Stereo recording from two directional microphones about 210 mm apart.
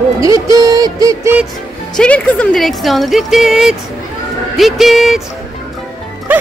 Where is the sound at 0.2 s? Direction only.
15° right (ahead or behind).